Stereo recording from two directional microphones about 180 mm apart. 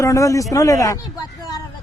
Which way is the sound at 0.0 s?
15° left (ahead or behind).